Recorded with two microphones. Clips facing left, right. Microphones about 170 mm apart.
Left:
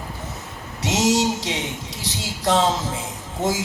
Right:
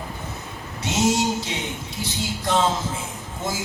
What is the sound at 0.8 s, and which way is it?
Speech, 80° left.